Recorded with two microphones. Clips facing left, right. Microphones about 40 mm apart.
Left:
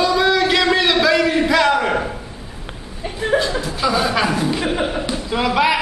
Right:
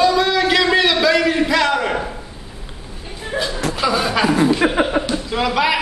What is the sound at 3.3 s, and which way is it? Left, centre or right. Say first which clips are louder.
Speech: left 5 dB; left.